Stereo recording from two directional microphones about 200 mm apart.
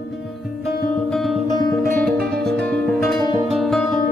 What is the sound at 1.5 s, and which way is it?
Music, 20° left (ahead or behind).